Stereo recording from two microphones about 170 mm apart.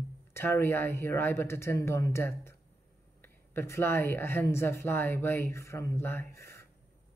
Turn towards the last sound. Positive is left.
turn(degrees=15)  # may be behind; listen again after turning